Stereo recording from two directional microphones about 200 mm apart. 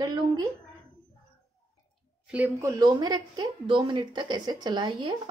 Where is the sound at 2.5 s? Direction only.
15° right (ahead or behind).